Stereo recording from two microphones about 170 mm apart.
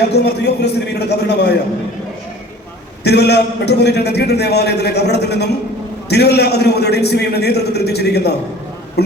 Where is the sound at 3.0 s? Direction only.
75° left (ahead or behind).